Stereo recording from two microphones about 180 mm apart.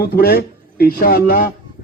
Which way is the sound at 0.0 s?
65° left (ahead or behind).